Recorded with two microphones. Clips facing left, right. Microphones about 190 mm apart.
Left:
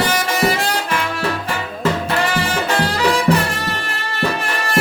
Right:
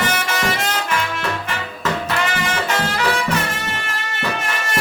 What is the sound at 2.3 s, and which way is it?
Music, 35° left (ahead or behind).